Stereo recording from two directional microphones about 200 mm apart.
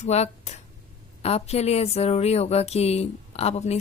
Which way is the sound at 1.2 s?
30° left (ahead or behind).